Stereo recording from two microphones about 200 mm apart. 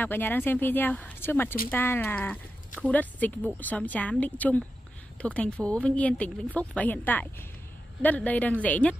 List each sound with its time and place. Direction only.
0.0 s speech: 10° left (ahead or behind)